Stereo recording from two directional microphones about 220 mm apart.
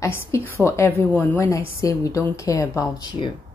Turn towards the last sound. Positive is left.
turn(degrees=15)  # may be behind; listen again after turning